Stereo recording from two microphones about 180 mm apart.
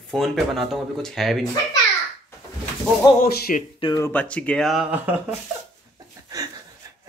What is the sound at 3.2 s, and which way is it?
Speech, 55° left (ahead or behind).